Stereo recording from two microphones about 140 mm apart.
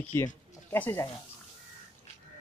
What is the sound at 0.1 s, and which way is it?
Speech, 15° left (ahead or behind).